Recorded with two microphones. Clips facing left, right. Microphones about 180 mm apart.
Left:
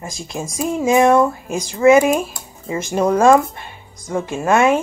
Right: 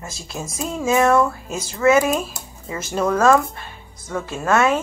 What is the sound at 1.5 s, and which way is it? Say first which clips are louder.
Speech: left 6 dB; 15° left (ahead or behind).